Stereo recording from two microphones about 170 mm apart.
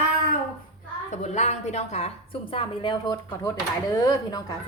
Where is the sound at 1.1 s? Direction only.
40° left (ahead or behind); by 3.5 s 20° left (ahead or behind).